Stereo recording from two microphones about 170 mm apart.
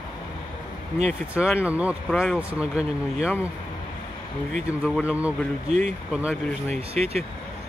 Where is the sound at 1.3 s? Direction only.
5° right (ahead or behind).